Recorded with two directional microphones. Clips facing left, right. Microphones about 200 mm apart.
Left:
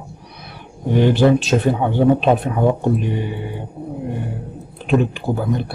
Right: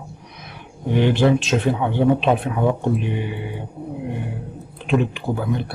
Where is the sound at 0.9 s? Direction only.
40° left (ahead or behind).